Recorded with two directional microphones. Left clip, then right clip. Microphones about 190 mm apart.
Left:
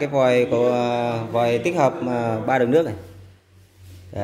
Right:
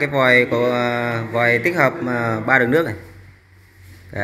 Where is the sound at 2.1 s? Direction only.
5° left (ahead or behind).